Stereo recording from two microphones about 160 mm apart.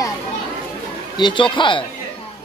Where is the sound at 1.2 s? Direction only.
30° left (ahead or behind).